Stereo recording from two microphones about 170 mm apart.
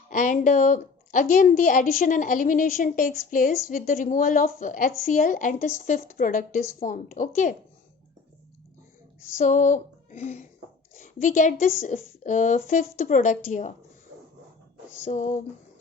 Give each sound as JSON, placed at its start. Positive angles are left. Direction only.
{"t": 0.1, "sound": "a woman's voice", "side_deg": 50}
{"t": 9.4, "sound": "speech", "side_deg": 45}
{"t": 10.9, "sound": "a sound", "side_deg": 50}
{"t": 11.6, "sound": "a woman's voice", "side_deg": 50}
{"t": 15.0, "sound": "a woman's voice", "side_deg": 45}